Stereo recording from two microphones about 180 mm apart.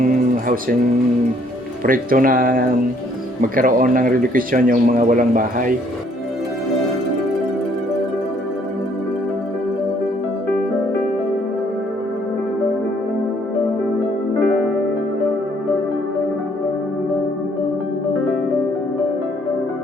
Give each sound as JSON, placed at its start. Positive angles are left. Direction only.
{"t": 0.0, "sound": "music", "side_deg": -50}
{"t": 1.8, "sound": "speech", "side_deg": -50}